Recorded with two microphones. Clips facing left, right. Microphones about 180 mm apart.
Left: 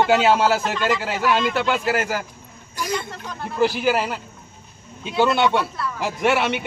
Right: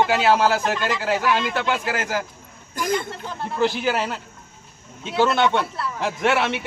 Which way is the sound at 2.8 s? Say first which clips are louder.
Right 3 dB; 50° right (ahead or behind).